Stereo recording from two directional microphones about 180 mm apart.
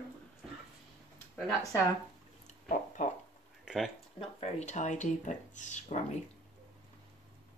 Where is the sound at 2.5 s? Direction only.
45° left (ahead or behind).